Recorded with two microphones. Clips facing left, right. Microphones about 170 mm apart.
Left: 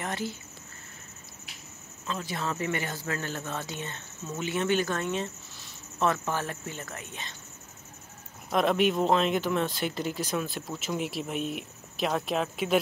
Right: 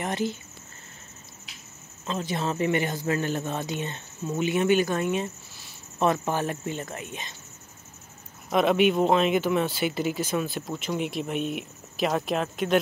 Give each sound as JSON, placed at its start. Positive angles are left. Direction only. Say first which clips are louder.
{"t": 0.0, "sound": "speech", "louder": "right 5 dB", "side_deg": -20}
{"t": 2.0, "sound": "speech", "louder": "right 4 dB", "side_deg": -25}
{"t": 8.5, "sound": "speech", "louder": "right 3 dB", "side_deg": 0}